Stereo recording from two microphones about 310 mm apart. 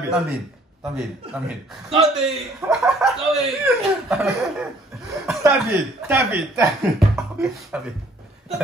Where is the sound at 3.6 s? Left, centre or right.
Centre.